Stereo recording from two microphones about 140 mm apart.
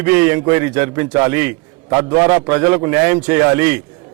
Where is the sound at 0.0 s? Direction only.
15° right (ahead or behind).